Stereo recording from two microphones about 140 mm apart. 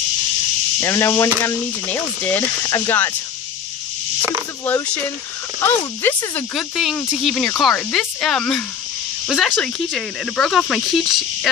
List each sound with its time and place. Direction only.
0.7 s speech: 20° left (ahead or behind)
2.6 s speech: 20° left (ahead or behind)
4.2 s a sound: 15° right (ahead or behind)
4.6 s speech: 10° left (ahead or behind)
6.5 s speech: centre (ahead or behind)